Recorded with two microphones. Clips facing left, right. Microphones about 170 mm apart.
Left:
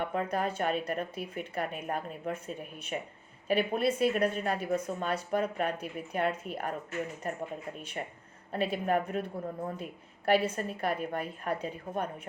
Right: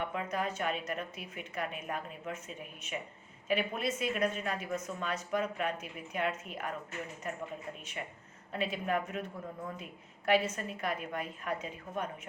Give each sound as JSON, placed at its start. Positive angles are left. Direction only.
{"t": 0.0, "sound": "a woman's voice", "side_deg": 40}
{"t": 8.0, "sound": "a woman's voice", "side_deg": 40}